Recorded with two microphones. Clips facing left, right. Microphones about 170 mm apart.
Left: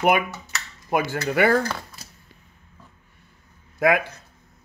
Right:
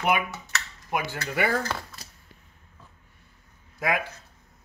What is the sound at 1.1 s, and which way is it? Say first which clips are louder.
Speech: left 8 dB; 65° left (ahead or behind).